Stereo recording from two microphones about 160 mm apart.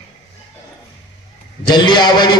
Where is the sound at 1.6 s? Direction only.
30° left (ahead or behind).